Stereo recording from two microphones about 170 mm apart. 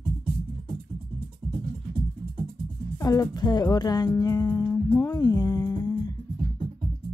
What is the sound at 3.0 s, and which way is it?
Speech, 20° left (ahead or behind).